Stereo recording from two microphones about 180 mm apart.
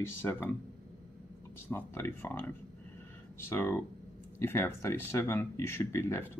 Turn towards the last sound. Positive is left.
turn(degrees=15)  # may be behind; listen again after turning